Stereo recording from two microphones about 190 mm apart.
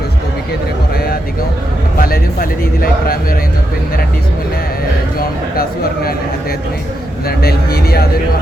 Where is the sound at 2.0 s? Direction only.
50° left (ahead or behind).